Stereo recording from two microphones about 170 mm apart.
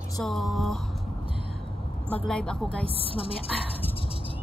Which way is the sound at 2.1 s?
5° left (ahead or behind).